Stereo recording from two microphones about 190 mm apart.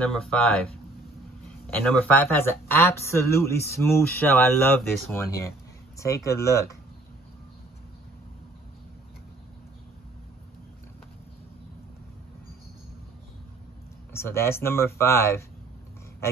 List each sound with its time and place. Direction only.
0.0 s speech: 5° left (ahead or behind)
1.8 s speech: 5° left (ahead or behind)
14.1 s speech: 15° left (ahead or behind)